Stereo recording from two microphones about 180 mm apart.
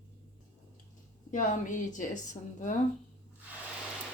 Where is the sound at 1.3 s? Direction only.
45° left (ahead or behind).